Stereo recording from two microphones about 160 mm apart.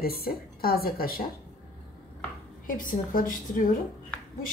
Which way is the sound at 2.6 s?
60° left (ahead or behind).